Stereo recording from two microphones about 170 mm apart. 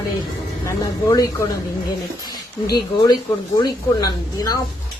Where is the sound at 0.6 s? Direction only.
20° left (ahead or behind).